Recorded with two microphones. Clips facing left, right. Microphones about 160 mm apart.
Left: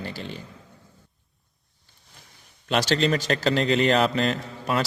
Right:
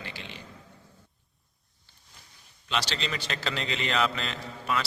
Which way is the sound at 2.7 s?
50° left (ahead or behind).